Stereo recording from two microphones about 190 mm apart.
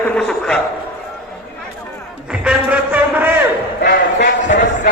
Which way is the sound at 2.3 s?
5° right (ahead or behind).